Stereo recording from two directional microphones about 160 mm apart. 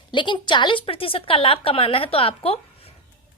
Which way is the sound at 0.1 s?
30° left (ahead or behind).